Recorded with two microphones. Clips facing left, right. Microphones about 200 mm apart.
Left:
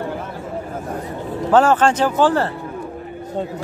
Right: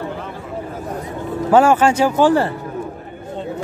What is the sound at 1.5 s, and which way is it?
Speech, 10° right (ahead or behind).